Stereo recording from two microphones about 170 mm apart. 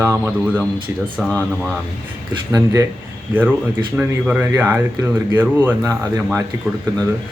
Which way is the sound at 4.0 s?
10° right (ahead or behind).